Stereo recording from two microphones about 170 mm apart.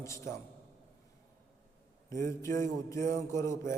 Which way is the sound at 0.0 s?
15° left (ahead or behind).